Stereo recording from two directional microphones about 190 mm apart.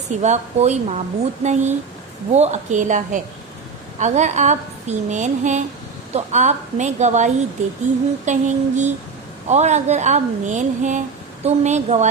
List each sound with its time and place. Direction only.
0.2 s a woman's voice: 35° right (ahead or behind)